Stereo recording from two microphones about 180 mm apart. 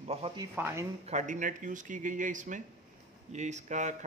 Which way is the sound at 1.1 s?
45° right (ahead or behind).